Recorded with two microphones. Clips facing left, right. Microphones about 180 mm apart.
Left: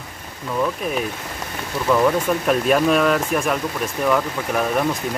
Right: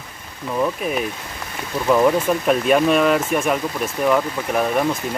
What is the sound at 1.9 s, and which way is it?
Speech, 15° right (ahead or behind).